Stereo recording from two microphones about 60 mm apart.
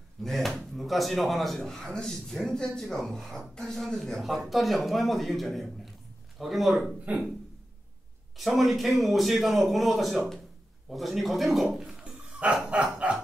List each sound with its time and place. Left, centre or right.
0.2 s speech: centre
8.4 s speech: centre
12.6 s a sound: centre